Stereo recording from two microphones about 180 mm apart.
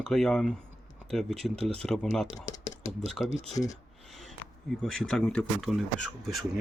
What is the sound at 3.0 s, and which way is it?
Speech, centre (ahead or behind).